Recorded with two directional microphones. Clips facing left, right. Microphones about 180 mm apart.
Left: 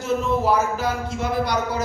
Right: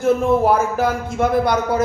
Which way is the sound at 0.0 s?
55° right (ahead or behind).